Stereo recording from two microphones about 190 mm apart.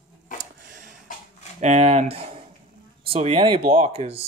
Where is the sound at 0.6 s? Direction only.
45° right (ahead or behind).